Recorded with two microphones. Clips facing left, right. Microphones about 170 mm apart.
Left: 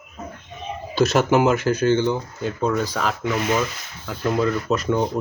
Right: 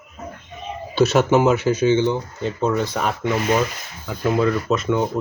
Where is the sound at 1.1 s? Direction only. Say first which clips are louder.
Right 1 dB; centre (ahead or behind).